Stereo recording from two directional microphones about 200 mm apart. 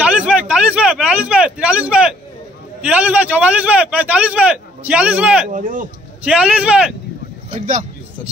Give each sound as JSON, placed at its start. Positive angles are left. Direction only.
{"t": 0.0, "sound": "a sound", "side_deg": -5}
{"t": 2.8, "sound": "a man's voice", "side_deg": -5}
{"t": 5.5, "sound": "speech", "side_deg": -40}
{"t": 6.2, "sound": "speech", "side_deg": -5}